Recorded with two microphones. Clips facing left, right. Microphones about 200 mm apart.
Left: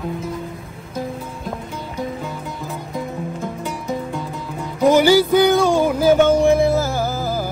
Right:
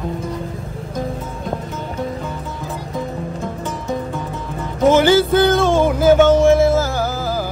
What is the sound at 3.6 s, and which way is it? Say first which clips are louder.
Music: right 2 dB; 15° left (ahead or behind).